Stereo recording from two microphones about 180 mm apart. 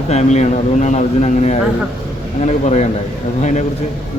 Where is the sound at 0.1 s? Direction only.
40° left (ahead or behind).